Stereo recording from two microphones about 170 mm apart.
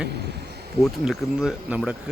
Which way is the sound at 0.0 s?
75° right (ahead or behind).